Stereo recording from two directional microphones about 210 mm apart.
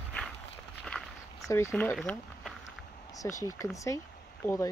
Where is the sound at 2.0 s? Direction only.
Centre (ahead or behind).